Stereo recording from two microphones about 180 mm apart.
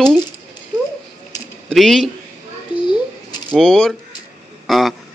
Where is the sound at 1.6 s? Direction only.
Centre (ahead or behind).